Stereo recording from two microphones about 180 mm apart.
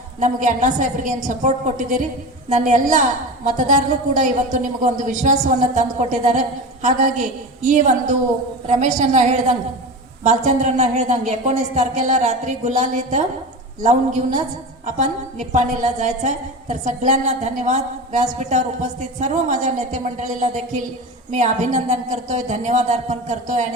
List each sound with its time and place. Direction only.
0.2 s a woman's voice: 45° right (ahead or behind)